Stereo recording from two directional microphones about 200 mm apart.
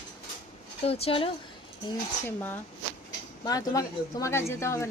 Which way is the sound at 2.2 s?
10° left (ahead or behind).